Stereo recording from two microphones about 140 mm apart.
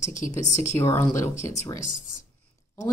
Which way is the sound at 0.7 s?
20° left (ahead or behind).